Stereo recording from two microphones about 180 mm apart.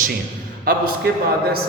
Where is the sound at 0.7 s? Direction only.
55° right (ahead or behind).